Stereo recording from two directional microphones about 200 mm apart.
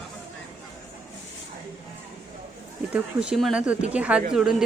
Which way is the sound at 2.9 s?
5° right (ahead or behind).